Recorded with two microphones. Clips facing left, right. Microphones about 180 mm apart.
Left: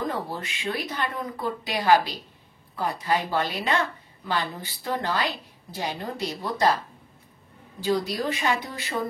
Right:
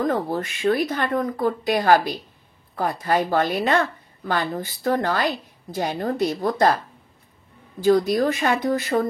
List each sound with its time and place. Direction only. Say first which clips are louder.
0.0 s a woman's voice: right 7 dB; 45° right (ahead or behind)
7.8 s a woman's voice: right 8 dB; 45° right (ahead or behind)